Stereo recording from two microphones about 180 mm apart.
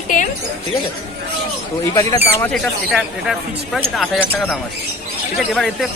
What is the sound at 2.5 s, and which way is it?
Speech, centre (ahead or behind).